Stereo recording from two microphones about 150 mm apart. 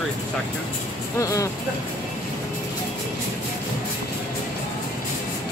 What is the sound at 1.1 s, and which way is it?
Speech, 20° left (ahead or behind).